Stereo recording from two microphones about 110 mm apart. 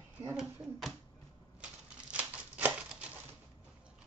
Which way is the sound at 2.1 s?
10° right (ahead or behind).